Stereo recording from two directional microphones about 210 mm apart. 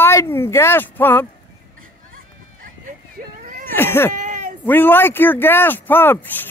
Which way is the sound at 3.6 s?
10° left (ahead or behind).